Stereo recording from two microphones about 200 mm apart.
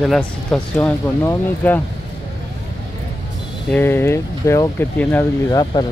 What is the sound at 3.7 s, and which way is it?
Speech, 10° left (ahead or behind).